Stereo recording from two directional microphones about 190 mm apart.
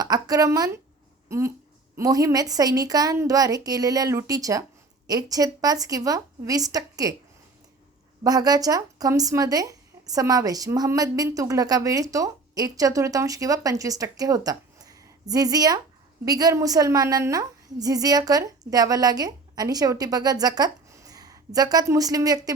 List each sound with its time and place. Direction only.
0.0 s speech: 20° right (ahead or behind)
8.2 s speech: 20° right (ahead or behind)